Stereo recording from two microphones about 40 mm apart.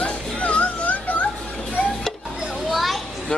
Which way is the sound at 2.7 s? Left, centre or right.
Centre.